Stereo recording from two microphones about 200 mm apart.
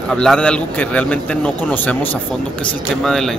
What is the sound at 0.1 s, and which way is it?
A man's voice, 5° left (ahead or behind).